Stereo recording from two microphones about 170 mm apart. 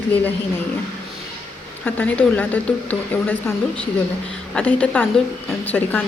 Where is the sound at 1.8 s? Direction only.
10° left (ahead or behind).